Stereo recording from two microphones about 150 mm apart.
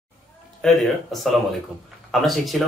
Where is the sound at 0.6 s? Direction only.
Centre (ahead or behind).